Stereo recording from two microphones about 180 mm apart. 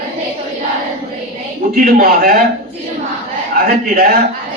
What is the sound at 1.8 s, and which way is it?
Speech, 55° right (ahead or behind).